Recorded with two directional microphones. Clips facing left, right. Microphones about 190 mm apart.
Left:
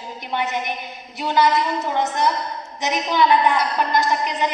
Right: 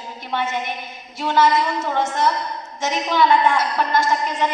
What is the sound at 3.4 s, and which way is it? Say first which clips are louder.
A woman's voice: even; 15° left (ahead or behind).